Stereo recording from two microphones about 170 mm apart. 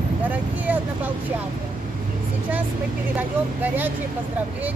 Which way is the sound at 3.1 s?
10° right (ahead or behind).